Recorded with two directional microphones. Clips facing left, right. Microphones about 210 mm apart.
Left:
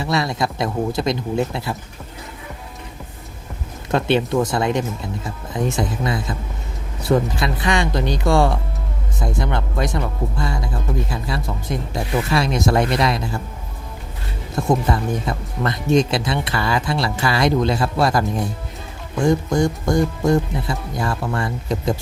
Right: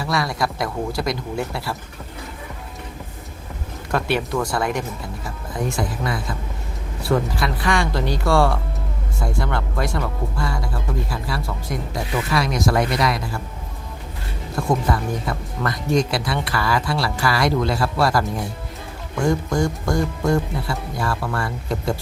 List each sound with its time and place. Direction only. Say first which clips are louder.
0.0 s speech: left 2 dB; 25° left (ahead or behind)
3.9 s speech: left 4 dB; 25° left (ahead or behind)
14.5 s speech: left 2 dB; 20° left (ahead or behind)